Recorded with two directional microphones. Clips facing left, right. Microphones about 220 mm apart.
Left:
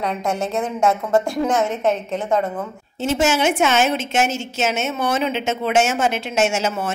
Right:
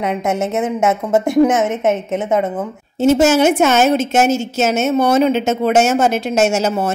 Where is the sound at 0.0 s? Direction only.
20° right (ahead or behind).